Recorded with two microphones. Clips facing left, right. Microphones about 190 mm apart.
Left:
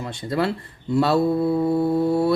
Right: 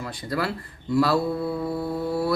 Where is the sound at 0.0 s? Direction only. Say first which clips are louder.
Left 4 dB; 25° left (ahead or behind).